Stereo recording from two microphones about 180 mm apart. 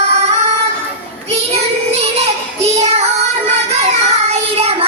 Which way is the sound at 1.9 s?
35° right (ahead or behind).